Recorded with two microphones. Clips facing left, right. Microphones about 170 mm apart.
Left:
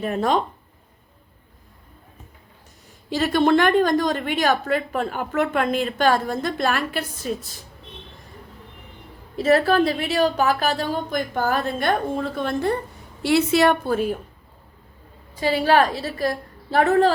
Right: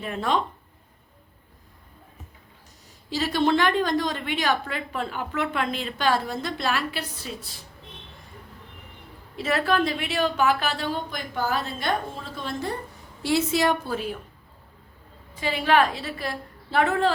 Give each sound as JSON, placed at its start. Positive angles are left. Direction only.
{"t": 0.0, "sound": "a woman's voice", "side_deg": 45}
{"t": 3.1, "sound": "a woman's voice", "side_deg": 55}
{"t": 9.4, "sound": "a woman's voice", "side_deg": 40}
{"t": 13.2, "sound": "a woman's voice", "side_deg": 65}
{"t": 15.4, "sound": "a woman's voice", "side_deg": 40}